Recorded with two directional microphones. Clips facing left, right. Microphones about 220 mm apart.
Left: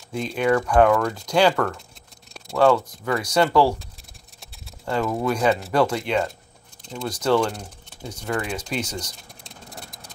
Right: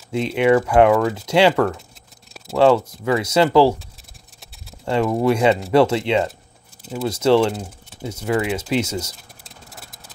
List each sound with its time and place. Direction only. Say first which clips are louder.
0.1 s speech: right 5 dB; 25° right (ahead or behind)
4.8 s speech: right 5 dB; 25° right (ahead or behind)
6.8 s a sound: right 6 dB; 5° right (ahead or behind)
7.1 s speech: right 5 dB; 25° right (ahead or behind)
9.4 s vehicle: left 4 dB; 5° right (ahead or behind)